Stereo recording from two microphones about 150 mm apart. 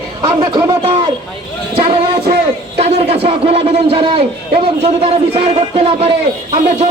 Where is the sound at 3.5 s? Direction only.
40° right (ahead or behind).